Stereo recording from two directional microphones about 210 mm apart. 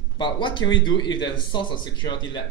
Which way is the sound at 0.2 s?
25° left (ahead or behind).